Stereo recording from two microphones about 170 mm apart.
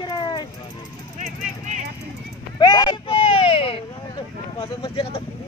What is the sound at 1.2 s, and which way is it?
Vehicle, 45° right (ahead or behind).